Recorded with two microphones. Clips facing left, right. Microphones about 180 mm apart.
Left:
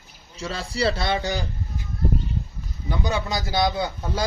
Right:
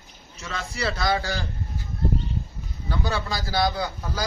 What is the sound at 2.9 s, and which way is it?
A man's voice, 15° left (ahead or behind).